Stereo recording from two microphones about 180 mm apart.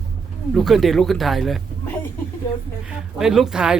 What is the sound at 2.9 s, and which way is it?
Speech, centre (ahead or behind).